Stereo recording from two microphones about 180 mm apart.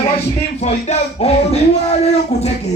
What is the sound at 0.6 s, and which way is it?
Speech, 35° left (ahead or behind).